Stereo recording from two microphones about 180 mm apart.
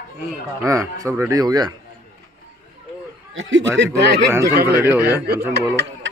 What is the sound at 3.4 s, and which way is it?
Speech, 90° right.